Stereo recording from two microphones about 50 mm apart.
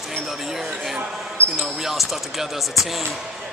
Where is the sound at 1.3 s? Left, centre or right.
Right.